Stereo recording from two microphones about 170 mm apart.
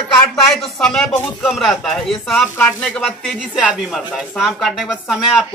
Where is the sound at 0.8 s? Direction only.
5° left (ahead or behind).